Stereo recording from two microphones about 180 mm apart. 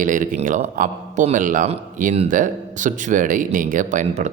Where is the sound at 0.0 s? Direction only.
45° right (ahead or behind).